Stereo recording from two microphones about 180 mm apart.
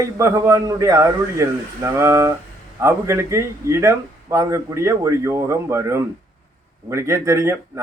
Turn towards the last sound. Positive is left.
turn(degrees=-15)  # may be behind; listen again after turning